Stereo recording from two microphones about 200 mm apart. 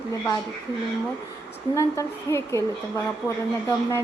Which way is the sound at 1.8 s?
15° left (ahead or behind).